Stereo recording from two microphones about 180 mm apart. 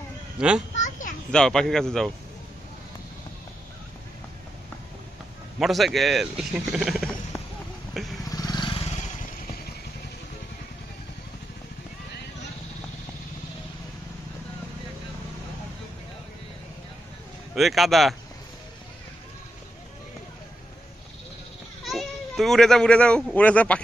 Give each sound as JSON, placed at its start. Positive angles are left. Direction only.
{"t": 0.4, "sound": "speech", "side_deg": -5}
{"t": 0.7, "sound": "children playing", "side_deg": 45}
{"t": 1.3, "sound": "speech", "side_deg": 5}
{"t": 5.6, "sound": "speech", "side_deg": 0}
{"t": 8.0, "sound": "vehicle", "side_deg": 0}
{"t": 8.3, "sound": "vehicle", "side_deg": 20}
{"t": 17.6, "sound": "speech", "side_deg": 0}
{"t": 21.8, "sound": "speech", "side_deg": 0}